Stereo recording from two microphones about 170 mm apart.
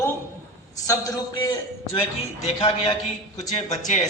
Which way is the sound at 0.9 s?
20° left (ahead or behind).